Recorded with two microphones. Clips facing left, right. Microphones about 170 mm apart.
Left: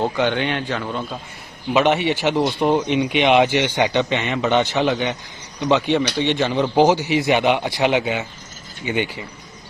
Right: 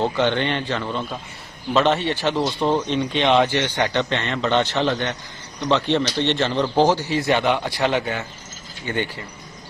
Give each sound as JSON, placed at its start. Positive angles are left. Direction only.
{"t": 0.0, "sound": "speech", "side_deg": 5}